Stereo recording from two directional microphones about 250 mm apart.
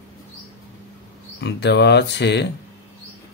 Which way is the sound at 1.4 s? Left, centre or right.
Left.